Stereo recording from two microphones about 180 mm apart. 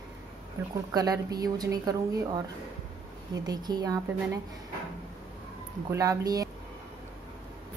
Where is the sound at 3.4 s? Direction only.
20° right (ahead or behind).